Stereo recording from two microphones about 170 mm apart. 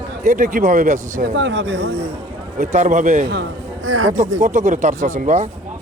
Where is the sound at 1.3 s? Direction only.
90° right.